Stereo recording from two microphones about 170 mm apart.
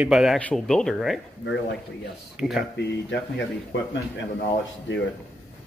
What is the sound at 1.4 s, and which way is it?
Speech, 90° left.